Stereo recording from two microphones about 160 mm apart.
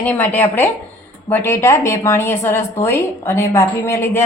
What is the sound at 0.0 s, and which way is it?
A woman's voice, 10° left (ahead or behind).